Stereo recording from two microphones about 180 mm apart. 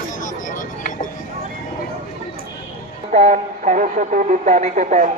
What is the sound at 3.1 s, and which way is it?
Speech, 45° right (ahead or behind).